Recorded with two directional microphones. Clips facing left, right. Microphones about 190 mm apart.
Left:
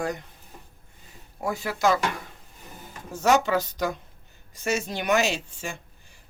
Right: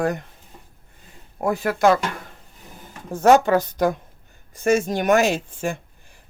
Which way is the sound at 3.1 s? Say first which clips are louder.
Right 7 dB; 55° right (ahead or behind).